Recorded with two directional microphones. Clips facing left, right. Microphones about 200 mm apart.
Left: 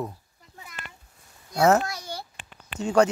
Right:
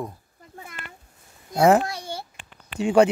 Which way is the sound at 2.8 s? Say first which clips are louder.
Right 3 dB; 10° right (ahead or behind).